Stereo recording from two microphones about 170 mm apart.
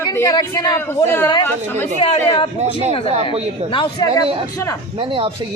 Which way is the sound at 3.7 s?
30° left (ahead or behind).